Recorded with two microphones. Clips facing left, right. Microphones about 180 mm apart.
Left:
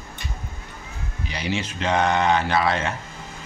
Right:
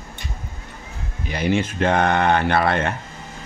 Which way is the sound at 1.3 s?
50° right (ahead or behind).